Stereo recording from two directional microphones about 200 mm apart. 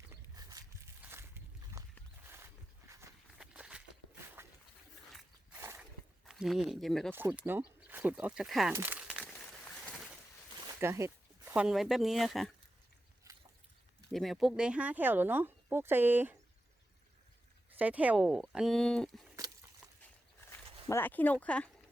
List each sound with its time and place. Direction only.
0.1 s a sound: 20° right (ahead or behind)
2.9 s walk: 10° right (ahead or behind)
5.5 s a sound: 10° right (ahead or behind)
7.1 s speech: 10° right (ahead or behind)
8.7 s crumpling: 10° right (ahead or behind)
10.8 s speech: 15° right (ahead or behind)
13.3 s a sound: 15° right (ahead or behind)
14.1 s speech: centre (ahead or behind)
17.7 s speech: 5° right (ahead or behind)
20.8 s speech: 10° left (ahead or behind)